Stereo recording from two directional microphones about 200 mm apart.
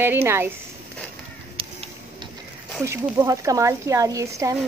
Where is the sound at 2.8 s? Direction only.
15° right (ahead or behind).